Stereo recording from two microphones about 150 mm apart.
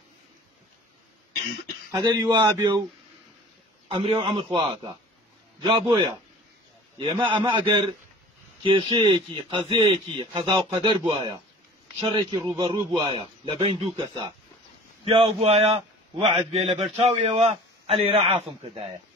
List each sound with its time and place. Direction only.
1.9 s a man's voice: 25° right (ahead or behind)
3.9 s a man's voice: 40° right (ahead or behind)